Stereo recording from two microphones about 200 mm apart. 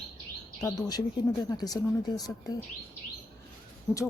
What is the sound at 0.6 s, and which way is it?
Speech, 20° left (ahead or behind).